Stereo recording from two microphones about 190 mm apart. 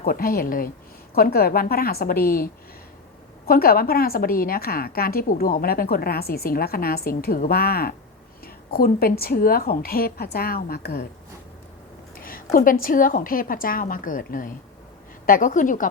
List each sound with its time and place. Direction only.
0.0 s a woman's voice: 50° left (ahead or behind)
12.1 s a woman's voice: 50° left (ahead or behind)